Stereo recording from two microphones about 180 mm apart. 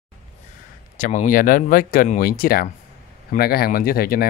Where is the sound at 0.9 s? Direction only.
45° left (ahead or behind).